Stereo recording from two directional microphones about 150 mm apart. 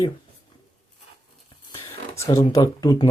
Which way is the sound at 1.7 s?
20° left (ahead or behind).